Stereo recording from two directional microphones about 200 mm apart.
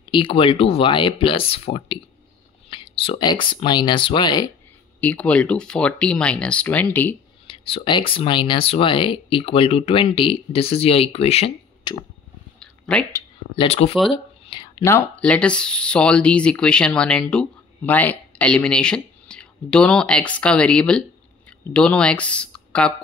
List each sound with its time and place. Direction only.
0.1 s speech: 25° left (ahead or behind)
5.0 s speech: 5° left (ahead or behind)
7.4 s speech: 25° left (ahead or behind)
12.5 s a sound: 5° left (ahead or behind)
13.6 s speech: 30° left (ahead or behind); by 22.9 s 5° left (ahead or behind)